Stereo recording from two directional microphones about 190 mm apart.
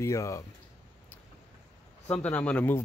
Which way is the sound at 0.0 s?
15° left (ahead or behind).